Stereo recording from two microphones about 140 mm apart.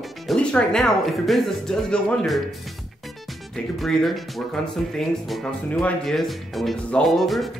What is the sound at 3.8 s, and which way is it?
Speech, centre (ahead or behind).